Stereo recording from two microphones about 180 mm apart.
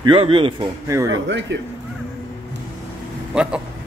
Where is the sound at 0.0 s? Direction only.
30° right (ahead or behind).